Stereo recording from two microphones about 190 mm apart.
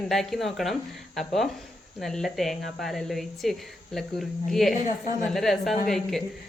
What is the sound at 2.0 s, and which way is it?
Speech, centre (ahead or behind).